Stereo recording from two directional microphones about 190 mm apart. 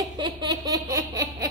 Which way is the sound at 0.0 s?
20° right (ahead or behind).